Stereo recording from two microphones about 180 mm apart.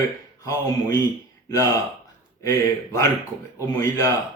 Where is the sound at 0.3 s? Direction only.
20° left (ahead or behind).